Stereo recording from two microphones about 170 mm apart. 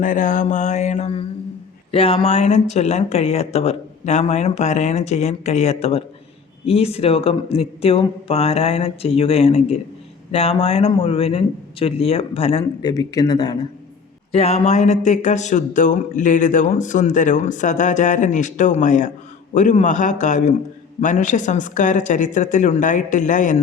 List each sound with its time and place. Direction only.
0.0 s speech: 50° left (ahead or behind)
12.8 s speech: 20° left (ahead or behind)
14.3 s speech: 35° left (ahead or behind)